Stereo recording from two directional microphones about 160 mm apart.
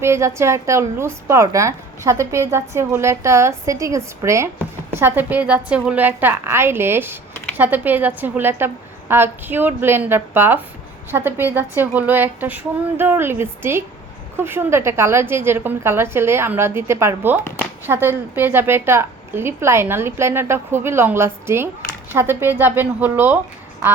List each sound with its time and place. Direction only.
0.0 s a woman's voice: 15° right (ahead or behind)